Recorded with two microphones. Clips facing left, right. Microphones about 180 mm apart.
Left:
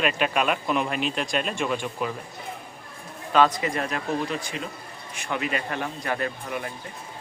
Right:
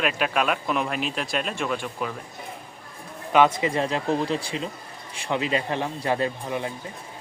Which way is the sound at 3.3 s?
20° right (ahead or behind).